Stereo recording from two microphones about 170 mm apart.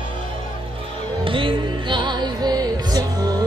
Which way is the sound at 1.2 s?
30° right (ahead or behind).